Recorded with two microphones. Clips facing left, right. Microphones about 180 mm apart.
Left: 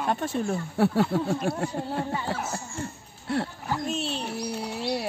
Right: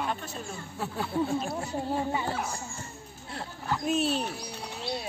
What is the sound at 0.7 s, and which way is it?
Speech, 70° left (ahead or behind).